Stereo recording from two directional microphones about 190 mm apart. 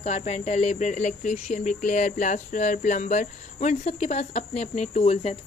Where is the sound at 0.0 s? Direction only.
35° left (ahead or behind).